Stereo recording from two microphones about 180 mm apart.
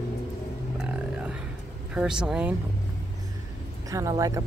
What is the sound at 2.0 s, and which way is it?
Speech, 5° right (ahead or behind).